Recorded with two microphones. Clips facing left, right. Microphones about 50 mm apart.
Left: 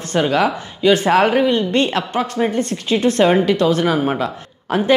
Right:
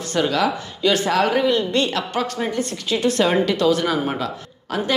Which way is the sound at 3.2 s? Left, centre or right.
Left.